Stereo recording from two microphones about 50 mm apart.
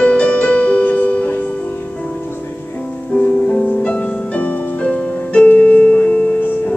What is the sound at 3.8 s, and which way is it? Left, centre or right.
Music, left.